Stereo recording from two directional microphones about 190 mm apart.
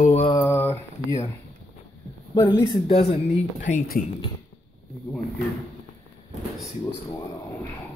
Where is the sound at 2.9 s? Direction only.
30° left (ahead or behind).